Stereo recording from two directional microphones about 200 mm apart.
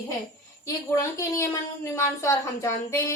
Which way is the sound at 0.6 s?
15° left (ahead or behind).